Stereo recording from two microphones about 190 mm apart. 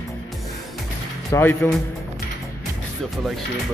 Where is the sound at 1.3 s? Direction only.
10° left (ahead or behind).